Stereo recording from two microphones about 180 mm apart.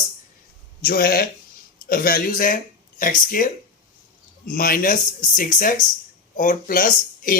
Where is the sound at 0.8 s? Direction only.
55° left (ahead or behind).